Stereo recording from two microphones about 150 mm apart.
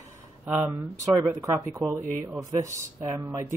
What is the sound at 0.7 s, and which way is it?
Speech, 25° right (ahead or behind).